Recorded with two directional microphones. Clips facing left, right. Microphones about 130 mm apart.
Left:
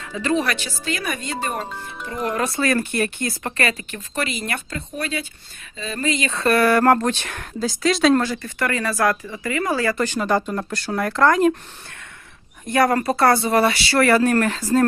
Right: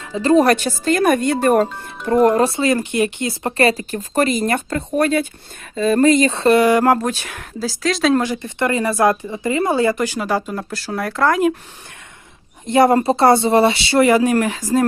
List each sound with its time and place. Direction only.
0.0 s speech: 30° right (ahead or behind); by 1.6 s 55° right (ahead or behind)
2.0 s speech: 45° right (ahead or behind)
2.4 s speech: 25° right (ahead or behind)
3.6 s speech: 35° right (ahead or behind)
6.3 s speech: 25° right (ahead or behind); by 8.2 s centre (ahead or behind)
8.2 s speech: 20° right (ahead or behind)
10.0 s speech: 10° right (ahead or behind)
12.6 s speech: 25° right (ahead or behind)